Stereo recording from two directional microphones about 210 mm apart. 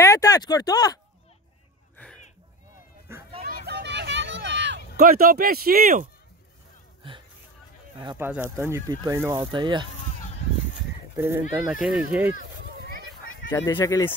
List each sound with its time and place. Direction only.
0.0 s speech: 15° left (ahead or behind)
3.1 s a sound: 10° right (ahead or behind)
3.6 s a sound: 55° right (ahead or behind)
8.2 s speech: 10° right (ahead or behind)
11.1 s speech: 10° right (ahead or behind)
13.5 s speech: 10° left (ahead or behind)